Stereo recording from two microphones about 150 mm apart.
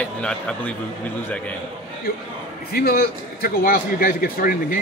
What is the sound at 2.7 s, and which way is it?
A man's voice, 90° left.